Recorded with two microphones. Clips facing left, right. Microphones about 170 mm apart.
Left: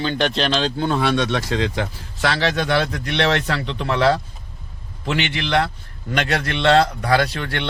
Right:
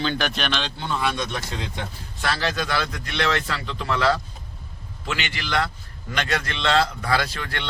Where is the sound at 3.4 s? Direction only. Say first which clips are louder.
Left 5 dB; 50° left (ahead or behind).